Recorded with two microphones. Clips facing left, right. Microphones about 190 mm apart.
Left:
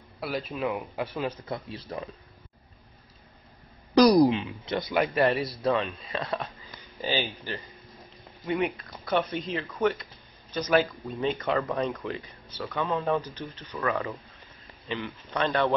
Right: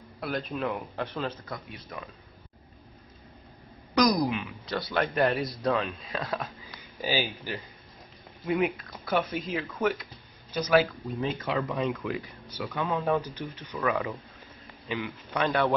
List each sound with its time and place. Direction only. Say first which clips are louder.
0.2 s speech: left 1 dB; centre (ahead or behind)
1.0 s speech: left 1 dB; 15° left (ahead or behind)
1.5 s speech: left 5 dB; 30° left (ahead or behind)
3.9 s speech: left 6 dB; 30° left (ahead or behind)
5.1 s speech: left 1 dB; centre (ahead or behind)
12.4 s speech: left 2 dB; 10° right (ahead or behind)
12.8 s speech: even; centre (ahead or behind)
13.2 s speech: right 1 dB; 10° right (ahead or behind)
14.9 s speech: even; 5° right (ahead or behind)